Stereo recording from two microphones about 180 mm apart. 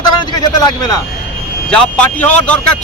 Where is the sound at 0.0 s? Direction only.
25° left (ahead or behind).